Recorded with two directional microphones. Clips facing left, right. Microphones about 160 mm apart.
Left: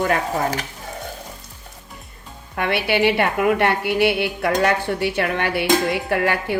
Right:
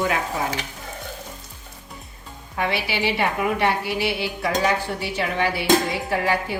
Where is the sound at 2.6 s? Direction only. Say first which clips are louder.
Left 5 dB; 60° left (ahead or behind).